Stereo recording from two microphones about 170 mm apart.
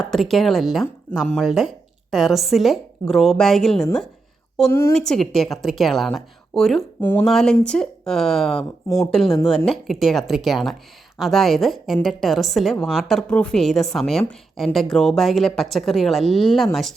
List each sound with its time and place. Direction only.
0.0 s a woman's voice: centre (ahead or behind)
4.7 s a woman's voice: 15° left (ahead or behind)
4.9 s a woman's voice: 5° left (ahead or behind)
7.0 s a woman's voice: 15° left (ahead or behind)